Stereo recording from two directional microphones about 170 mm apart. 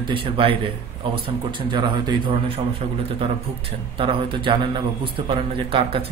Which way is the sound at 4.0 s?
30° right (ahead or behind).